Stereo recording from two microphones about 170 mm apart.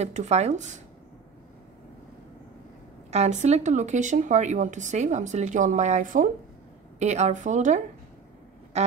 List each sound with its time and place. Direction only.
0.0 s speech: 40° right (ahead or behind)
3.1 s speech: 40° right (ahead or behind)
8.7 s music: 40° right (ahead or behind)